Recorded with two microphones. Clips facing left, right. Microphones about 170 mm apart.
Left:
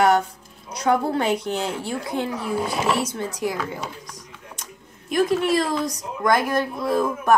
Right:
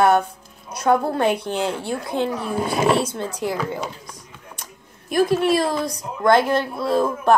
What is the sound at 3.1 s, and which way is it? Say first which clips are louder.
Speech: right 1 dB; 55° right (ahead or behind).